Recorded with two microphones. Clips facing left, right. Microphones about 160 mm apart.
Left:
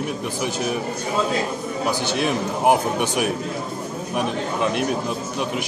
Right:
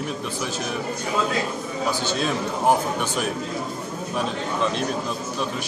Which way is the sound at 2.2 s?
15° left (ahead or behind).